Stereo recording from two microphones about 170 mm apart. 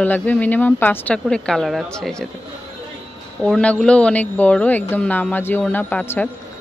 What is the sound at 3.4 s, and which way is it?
A woman's voice, 5° left (ahead or behind).